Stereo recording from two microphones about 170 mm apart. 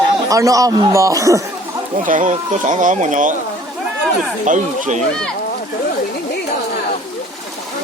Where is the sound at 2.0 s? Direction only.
50° right (ahead or behind).